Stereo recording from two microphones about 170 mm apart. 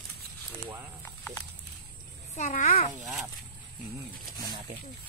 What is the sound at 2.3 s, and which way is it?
Speech, 45° left (ahead or behind).